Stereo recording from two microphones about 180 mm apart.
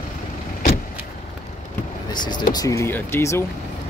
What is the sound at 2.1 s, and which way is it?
Speech, 25° left (ahead or behind).